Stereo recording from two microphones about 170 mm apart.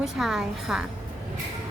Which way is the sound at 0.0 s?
Centre (ahead or behind).